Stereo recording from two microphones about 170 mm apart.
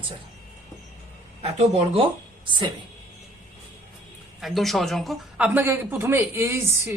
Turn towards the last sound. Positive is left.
turn(degrees=-15)  # may be behind; listen again after turning